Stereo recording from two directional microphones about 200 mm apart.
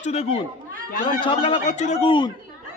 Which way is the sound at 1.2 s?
25° left (ahead or behind).